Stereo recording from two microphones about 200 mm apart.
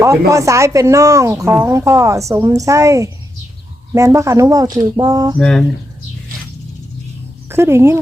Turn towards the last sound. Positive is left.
turn(degrees=-10)  # may be behind; listen again after turning